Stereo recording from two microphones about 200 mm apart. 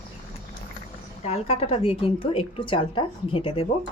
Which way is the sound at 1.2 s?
30° left (ahead or behind).